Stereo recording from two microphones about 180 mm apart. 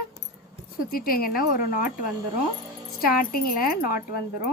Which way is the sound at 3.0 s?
55° left (ahead or behind).